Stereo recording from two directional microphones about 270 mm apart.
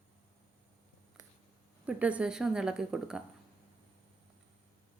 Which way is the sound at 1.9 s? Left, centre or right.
Centre.